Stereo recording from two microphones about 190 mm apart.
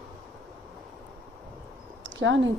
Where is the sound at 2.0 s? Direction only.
85° right.